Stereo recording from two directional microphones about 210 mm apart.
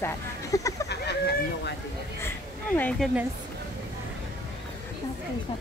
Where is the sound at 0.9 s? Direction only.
55° left (ahead or behind).